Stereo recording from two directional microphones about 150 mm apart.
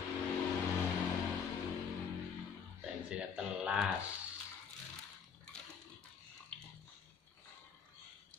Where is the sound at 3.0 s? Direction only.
5° right (ahead or behind).